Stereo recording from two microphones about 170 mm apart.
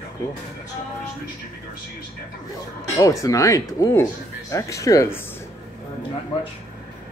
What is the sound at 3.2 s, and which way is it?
Speech, 20° left (ahead or behind).